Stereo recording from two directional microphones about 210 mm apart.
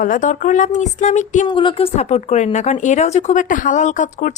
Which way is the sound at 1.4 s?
25° left (ahead or behind).